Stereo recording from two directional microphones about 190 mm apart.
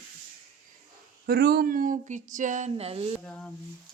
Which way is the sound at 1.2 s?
55° right (ahead or behind).